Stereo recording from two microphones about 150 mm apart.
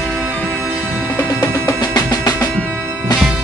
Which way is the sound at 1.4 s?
20° left (ahead or behind).